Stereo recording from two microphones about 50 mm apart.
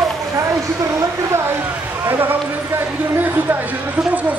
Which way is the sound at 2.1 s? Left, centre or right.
Right.